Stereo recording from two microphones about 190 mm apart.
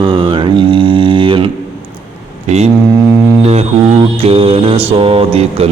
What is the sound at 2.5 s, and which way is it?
Speech, 35° right (ahead or behind).